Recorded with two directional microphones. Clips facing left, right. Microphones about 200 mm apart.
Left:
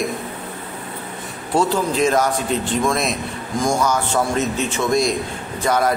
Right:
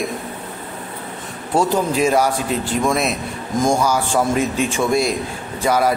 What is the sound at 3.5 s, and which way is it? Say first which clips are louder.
Speech: right 3 dB; 20° right (ahead or behind).